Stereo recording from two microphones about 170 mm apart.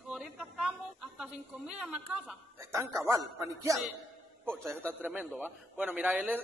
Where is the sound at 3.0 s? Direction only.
15° right (ahead or behind).